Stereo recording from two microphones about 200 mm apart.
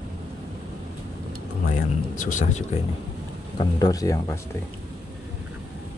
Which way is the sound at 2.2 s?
40° left (ahead or behind).